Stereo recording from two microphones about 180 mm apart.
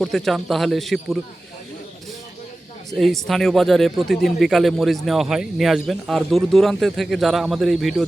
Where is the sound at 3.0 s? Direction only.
Centre (ahead or behind).